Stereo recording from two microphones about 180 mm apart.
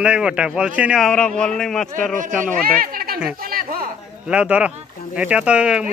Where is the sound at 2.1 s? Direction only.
45° right (ahead or behind).